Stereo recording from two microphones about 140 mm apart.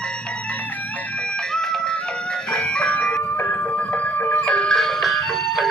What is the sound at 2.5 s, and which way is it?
Music, 5° left (ahead or behind).